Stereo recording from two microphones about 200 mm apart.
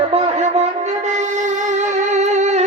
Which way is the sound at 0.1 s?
35° right (ahead or behind).